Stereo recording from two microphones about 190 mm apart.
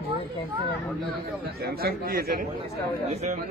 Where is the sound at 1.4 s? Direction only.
55° right (ahead or behind).